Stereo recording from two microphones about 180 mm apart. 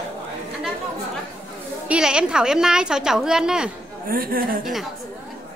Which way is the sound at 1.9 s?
5° right (ahead or behind).